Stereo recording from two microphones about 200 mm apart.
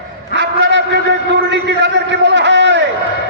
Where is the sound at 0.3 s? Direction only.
65° right (ahead or behind).